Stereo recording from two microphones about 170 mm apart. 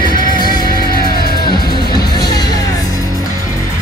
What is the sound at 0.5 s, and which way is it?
Music, 60° left (ahead or behind).